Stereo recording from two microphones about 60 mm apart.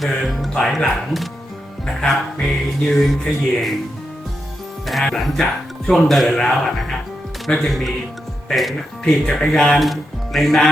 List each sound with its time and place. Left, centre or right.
0.0 s speech: centre
4.9 s speech: centre